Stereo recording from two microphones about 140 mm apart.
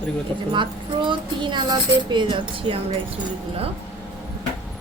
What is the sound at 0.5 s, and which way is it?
Speech, 35° right (ahead or behind).